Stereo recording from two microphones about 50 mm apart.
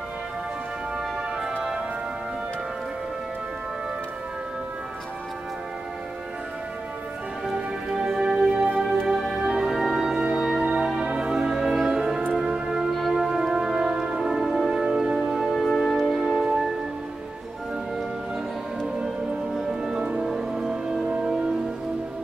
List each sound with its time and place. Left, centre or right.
7.4 s music: centre
10.6 s music: right; by 16.7 s centre
19.0 s music: centre
20.0 s music: right
20.2 s music: centre